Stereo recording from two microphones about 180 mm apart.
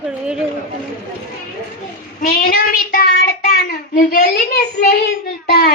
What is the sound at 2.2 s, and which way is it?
Child singing, 55° left (ahead or behind).